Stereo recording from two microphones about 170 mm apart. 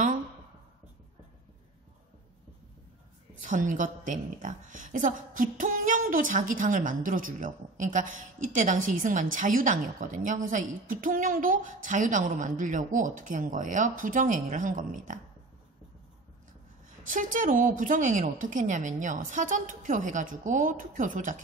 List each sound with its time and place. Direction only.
3.3 s a woman's voice: 50° right (ahead or behind)
17.1 s a woman's voice: 50° right (ahead or behind)